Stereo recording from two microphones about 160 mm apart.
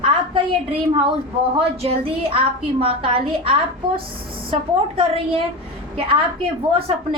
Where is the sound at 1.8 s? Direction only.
35° right (ahead or behind).